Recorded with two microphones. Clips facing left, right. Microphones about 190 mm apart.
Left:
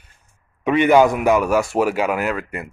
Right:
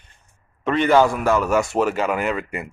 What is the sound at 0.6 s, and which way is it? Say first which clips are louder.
Speech: left 3 dB; 15° left (ahead or behind).